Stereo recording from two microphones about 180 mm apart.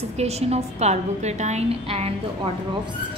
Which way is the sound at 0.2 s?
35° right (ahead or behind).